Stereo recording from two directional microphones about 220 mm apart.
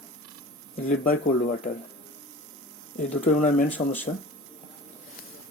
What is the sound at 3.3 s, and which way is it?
Speech, 35° left (ahead or behind).